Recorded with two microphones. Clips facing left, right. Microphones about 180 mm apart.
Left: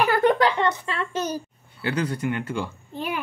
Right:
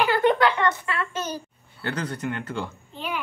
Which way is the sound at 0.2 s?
40° left (ahead or behind).